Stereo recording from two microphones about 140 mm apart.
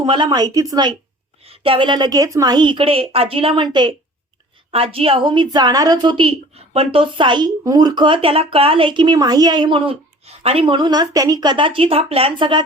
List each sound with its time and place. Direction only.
0.0 s speech: 35° right (ahead or behind)
1.5 s speech: 40° right (ahead or behind)
4.7 s speech: 45° right (ahead or behind)